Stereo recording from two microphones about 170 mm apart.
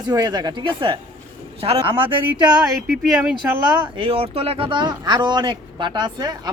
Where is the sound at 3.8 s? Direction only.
35° right (ahead or behind).